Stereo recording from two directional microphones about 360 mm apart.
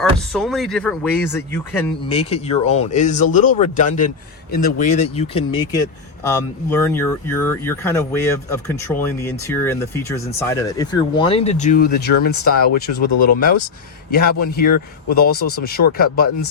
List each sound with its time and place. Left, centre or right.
0.0 s speech: centre; by 13.6 s left
15.1 s speech: left